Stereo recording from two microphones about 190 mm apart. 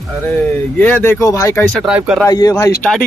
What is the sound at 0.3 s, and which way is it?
Speech, 10° left (ahead or behind).